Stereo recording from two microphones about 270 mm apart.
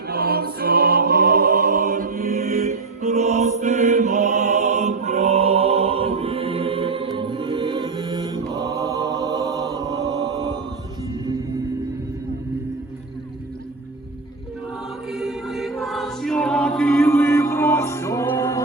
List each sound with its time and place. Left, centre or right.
0.1 s music: right; by 8.2 s centre
8.5 s mantra: centre
15.1 s choir: centre